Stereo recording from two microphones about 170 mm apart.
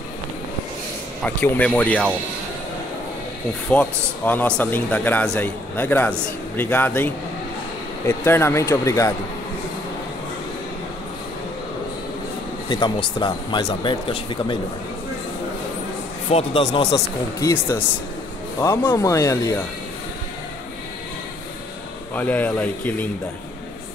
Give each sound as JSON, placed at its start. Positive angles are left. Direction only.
{"t": 1.2, "sound": "a man's voice", "side_deg": 10}
{"t": 3.7, "sound": "a man's voice", "side_deg": 5}
{"t": 12.6, "sound": "speech", "side_deg": 30}
{"t": 16.3, "sound": "speech", "side_deg": 35}
{"t": 16.9, "sound": "a man's voice", "side_deg": 20}
{"t": 22.1, "sound": "a man's voice", "side_deg": 10}